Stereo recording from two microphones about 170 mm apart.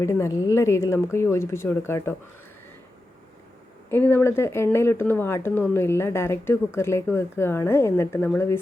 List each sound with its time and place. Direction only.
0.0 s speech: 15° left (ahead or behind)
3.8 s speech: 15° left (ahead or behind)